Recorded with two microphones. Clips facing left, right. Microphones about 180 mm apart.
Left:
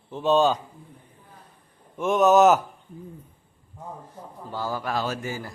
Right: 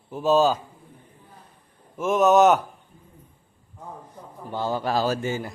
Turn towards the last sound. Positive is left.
turn(degrees=-35)  # may be behind; listen again after turning